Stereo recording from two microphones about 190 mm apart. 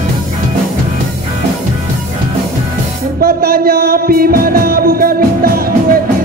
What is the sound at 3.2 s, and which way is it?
Music, 50° right (ahead or behind).